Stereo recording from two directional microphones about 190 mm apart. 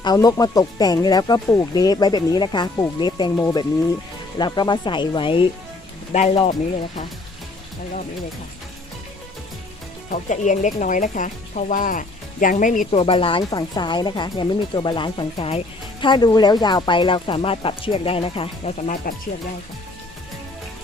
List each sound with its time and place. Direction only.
0.0 s speech: 20° left (ahead or behind)
6.1 s speech: 40° left (ahead or behind)
10.1 s speech: 40° left (ahead or behind)
12.9 s speech: 30° left (ahead or behind)
19.1 s speech: 50° left (ahead or behind)